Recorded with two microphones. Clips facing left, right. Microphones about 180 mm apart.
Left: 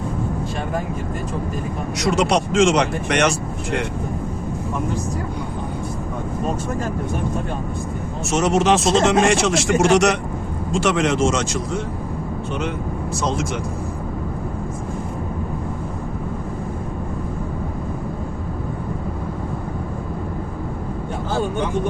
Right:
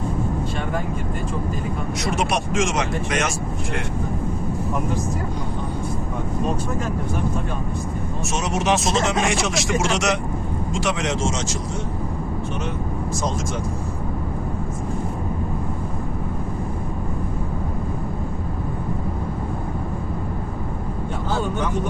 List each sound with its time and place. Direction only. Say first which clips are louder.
2.0 s speech: left 6 dB; 70° left (ahead or behind)
8.2 s speech: left 7 dB; 65° left (ahead or behind)
13.1 s speech: left 4 dB; 65° left (ahead or behind)